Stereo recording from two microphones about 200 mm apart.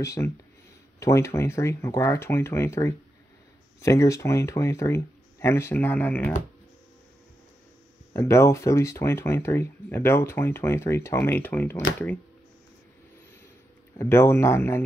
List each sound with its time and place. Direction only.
0.0 s speech: 15° left (ahead or behind)
8.1 s speech: 15° left (ahead or behind)
13.9 s speech: 10° left (ahead or behind)